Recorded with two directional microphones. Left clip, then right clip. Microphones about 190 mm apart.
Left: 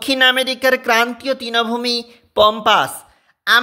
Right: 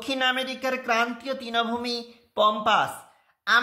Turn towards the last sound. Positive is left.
turn(degrees=40)  # may be behind; listen again after turning